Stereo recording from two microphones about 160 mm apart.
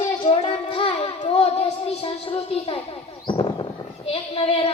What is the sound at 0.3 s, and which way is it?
Child singing, 35° left (ahead or behind).